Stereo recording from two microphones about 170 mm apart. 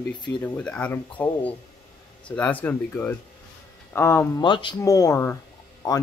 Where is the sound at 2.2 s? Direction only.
10° left (ahead or behind).